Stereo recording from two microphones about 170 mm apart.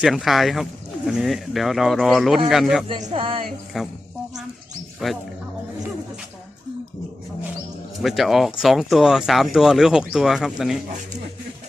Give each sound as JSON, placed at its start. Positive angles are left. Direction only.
{"t": 0.0, "sound": "speech", "side_deg": 0}
{"t": 3.0, "sound": "speech", "side_deg": -35}
{"t": 3.7, "sound": "speech", "side_deg": 0}
{"t": 5.0, "sound": "speech", "side_deg": 0}
{"t": 8.0, "sound": "speech", "side_deg": 0}